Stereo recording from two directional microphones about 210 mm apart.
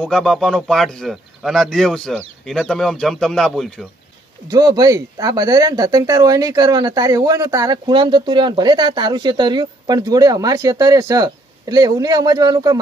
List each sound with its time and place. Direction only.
0.0 s speech: centre (ahead or behind)
4.5 s speech: 20° right (ahead or behind)